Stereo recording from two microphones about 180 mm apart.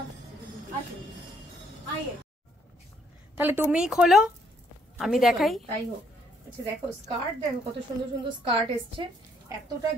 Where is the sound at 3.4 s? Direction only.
10° right (ahead or behind).